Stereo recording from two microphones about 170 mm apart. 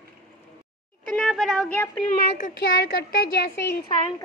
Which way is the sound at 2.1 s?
65° left (ahead or behind).